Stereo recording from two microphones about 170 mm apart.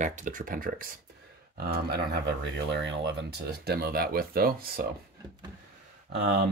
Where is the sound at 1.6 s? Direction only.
70° right (ahead or behind).